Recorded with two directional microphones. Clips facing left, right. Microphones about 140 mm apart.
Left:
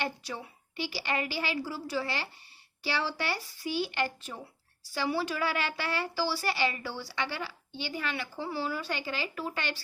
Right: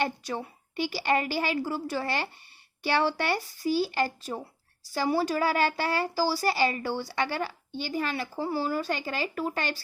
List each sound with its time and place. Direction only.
0.0 s a woman's voice: 45° right (ahead or behind)